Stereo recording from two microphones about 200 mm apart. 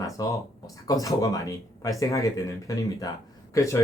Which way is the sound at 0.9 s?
15° left (ahead or behind).